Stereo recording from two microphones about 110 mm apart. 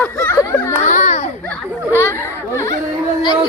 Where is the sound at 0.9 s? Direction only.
90° left.